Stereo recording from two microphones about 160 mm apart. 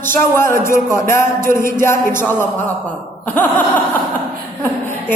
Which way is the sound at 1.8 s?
15° left (ahead or behind).